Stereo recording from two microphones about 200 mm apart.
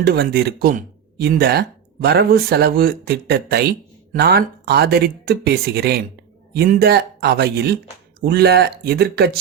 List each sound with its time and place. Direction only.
0.0 s speech: 50° right (ahead or behind)